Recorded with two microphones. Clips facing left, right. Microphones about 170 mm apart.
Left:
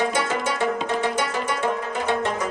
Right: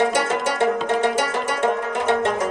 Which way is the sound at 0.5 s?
80° right.